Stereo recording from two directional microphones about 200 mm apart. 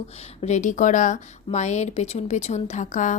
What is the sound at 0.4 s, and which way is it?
A woman's voice, 35° left (ahead or behind).